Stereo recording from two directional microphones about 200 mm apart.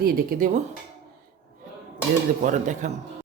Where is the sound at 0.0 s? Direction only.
45° right (ahead or behind).